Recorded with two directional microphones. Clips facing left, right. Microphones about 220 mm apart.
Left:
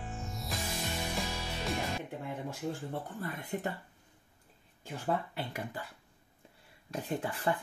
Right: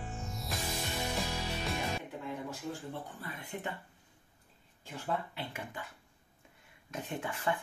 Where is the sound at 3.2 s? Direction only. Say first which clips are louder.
Left 5 dB; 45° left (ahead or behind).